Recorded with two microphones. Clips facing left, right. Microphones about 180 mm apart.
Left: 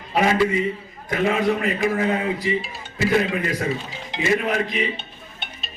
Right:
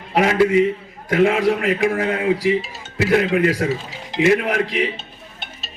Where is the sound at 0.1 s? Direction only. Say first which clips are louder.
Right 4 dB; 70° right (ahead or behind).